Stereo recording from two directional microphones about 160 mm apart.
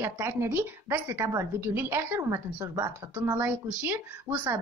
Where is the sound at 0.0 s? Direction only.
15° right (ahead or behind).